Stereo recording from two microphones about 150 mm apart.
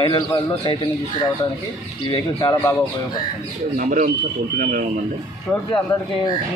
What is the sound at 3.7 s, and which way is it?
Speech, 65° right (ahead or behind).